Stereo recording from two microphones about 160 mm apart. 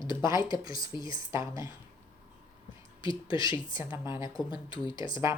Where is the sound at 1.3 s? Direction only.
20° right (ahead or behind).